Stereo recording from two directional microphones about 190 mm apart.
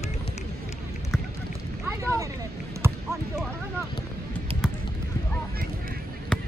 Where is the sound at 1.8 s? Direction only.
15° right (ahead or behind).